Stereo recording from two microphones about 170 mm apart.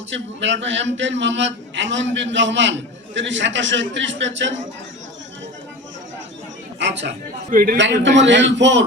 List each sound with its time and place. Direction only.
0.1 s a man's voice: 90° right
6.7 s speech: 90° right
7.5 s a man's voice: 55° right (ahead or behind)
7.8 s a man's voice: 90° right